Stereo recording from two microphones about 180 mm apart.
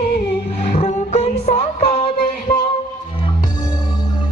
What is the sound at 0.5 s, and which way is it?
Roaring cats, 35° left (ahead or behind).